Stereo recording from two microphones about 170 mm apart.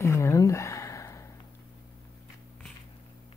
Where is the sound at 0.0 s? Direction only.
15° left (ahead or behind).